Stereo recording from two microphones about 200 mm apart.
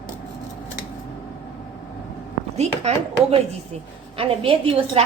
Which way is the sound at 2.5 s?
35° right (ahead or behind).